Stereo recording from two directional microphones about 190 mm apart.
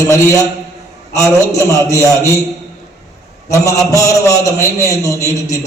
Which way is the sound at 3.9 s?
15° left (ahead or behind).